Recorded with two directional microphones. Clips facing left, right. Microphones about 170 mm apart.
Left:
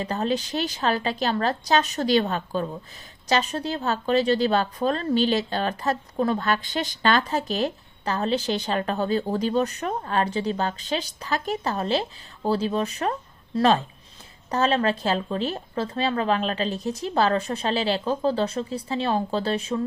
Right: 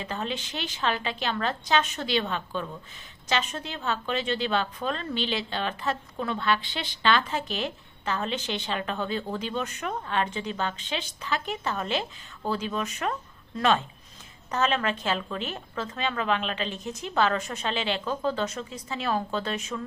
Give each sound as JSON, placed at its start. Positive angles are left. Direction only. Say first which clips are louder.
{"t": 0.0, "sound": "speech", "louder": "left 7 dB", "side_deg": 40}